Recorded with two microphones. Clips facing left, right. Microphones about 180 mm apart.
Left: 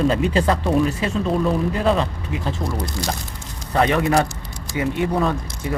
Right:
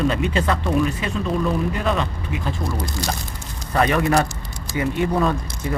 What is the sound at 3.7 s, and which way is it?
Speech, 20° left (ahead or behind).